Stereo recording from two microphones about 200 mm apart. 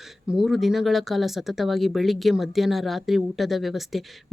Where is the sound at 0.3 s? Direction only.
Centre (ahead or behind).